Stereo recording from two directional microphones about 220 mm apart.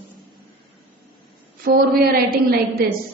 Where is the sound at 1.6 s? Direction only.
40° right (ahead or behind).